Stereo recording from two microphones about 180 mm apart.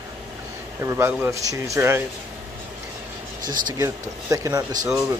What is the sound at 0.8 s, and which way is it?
Speech, 15° right (ahead or behind).